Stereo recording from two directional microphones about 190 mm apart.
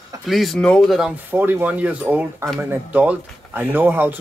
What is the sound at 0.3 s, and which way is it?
Speech, centre (ahead or behind).